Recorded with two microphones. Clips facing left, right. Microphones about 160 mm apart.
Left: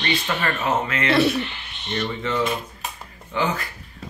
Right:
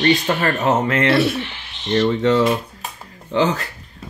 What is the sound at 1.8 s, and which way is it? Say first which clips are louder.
Speech: right 9 dB; 90° right.